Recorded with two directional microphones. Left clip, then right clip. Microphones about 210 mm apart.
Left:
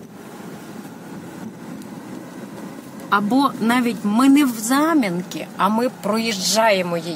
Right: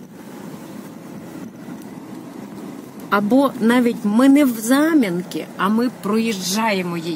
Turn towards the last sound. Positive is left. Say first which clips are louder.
# left 4 dB
turn(degrees=15)  # may be behind; listen again after turning